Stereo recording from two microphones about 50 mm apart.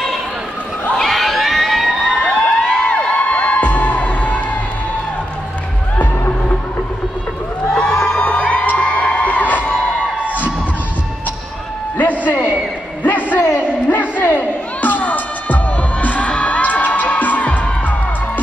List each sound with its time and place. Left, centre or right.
0.9 s children shouting: centre
2.2 s a sound: left
3.0 s music: left
7.7 s crowd: left
12.0 s a sound: left
13.8 s music: left